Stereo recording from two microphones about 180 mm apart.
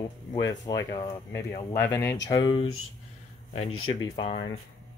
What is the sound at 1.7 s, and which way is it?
Speech, 15° left (ahead or behind).